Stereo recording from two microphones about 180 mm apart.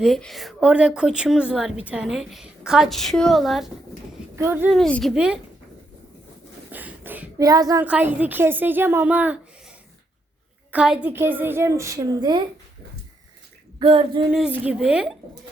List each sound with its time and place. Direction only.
0.0 s a woman's voice: centre (ahead or behind)
4.4 s a woman's voice: 10° right (ahead or behind)
4.7 s a woman's voice: 5° left (ahead or behind)
6.7 s a child's voice: 10° right (ahead or behind)
7.9 s a woman's voice: 10° right (ahead or behind)
10.7 s a woman's voice: 5° right (ahead or behind); by 12.4 s 20° right (ahead or behind)
13.7 s female singing: 25° right (ahead or behind)
14.3 s a woman's voice: 5° right (ahead or behind)